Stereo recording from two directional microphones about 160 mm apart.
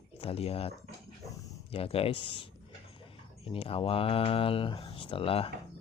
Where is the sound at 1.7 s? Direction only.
35° left (ahead or behind).